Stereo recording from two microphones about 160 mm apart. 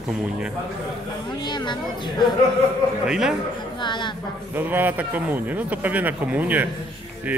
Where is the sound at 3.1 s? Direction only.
5° right (ahead or behind).